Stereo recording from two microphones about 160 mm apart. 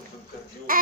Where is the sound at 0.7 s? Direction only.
60° right (ahead or behind).